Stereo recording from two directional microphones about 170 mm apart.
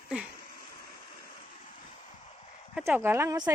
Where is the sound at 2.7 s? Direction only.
10° right (ahead or behind).